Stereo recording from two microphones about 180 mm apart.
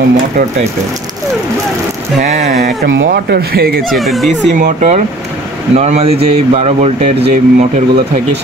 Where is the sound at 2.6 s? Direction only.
75° right (ahead or behind).